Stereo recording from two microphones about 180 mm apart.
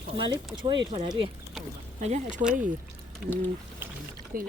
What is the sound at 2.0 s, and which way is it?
Speech, 40° right (ahead or behind).